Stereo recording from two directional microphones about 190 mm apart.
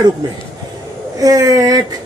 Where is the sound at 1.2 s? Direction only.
20° right (ahead or behind).